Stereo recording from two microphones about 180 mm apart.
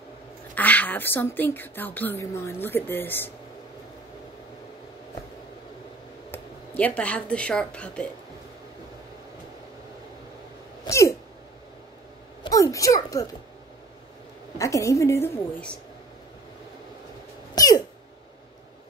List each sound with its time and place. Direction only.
0.6 s speech: 10° left (ahead or behind)
6.3 s speech: 10° left (ahead or behind)
10.9 s cough: 15° left (ahead or behind)
12.4 s a sound: 20° left (ahead or behind)
14.6 s speech: 15° left (ahead or behind)
17.6 s a sound: 20° left (ahead or behind)